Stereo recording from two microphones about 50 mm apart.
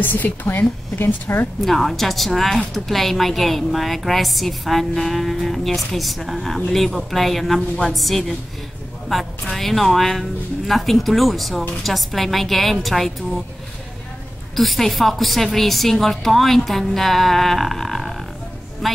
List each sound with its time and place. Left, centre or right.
0.0 s a woman's voice: left
1.6 s a woman's voice: centre
14.5 s a woman's voice: centre